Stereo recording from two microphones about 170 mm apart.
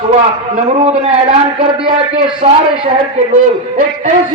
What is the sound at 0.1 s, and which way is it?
A man's voice, 40° right (ahead or behind).